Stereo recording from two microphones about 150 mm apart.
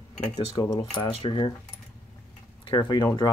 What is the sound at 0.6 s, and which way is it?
Speech, 25° left (ahead or behind).